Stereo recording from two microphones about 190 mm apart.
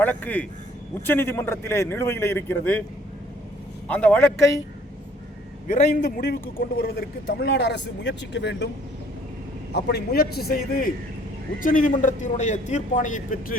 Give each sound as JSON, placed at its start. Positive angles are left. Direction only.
{"t": 0.0, "sound": "a man's voice", "side_deg": 10}
{"t": 3.8, "sound": "a man's voice", "side_deg": 5}
{"t": 5.6, "sound": "a man's voice", "side_deg": 40}
{"t": 9.7, "sound": "a man's voice", "side_deg": 60}